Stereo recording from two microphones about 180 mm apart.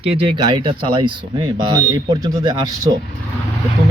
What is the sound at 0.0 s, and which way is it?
Speech, 30° right (ahead or behind).